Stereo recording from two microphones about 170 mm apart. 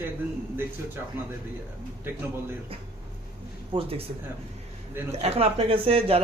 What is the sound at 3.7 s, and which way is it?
Speech, 35° right (ahead or behind).